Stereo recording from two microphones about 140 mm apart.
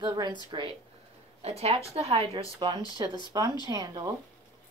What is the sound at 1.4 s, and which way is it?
Speech, 45° right (ahead or behind).